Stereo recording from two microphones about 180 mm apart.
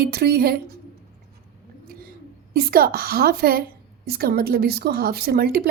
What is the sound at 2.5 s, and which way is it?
A woman's voice, 55° right (ahead or behind).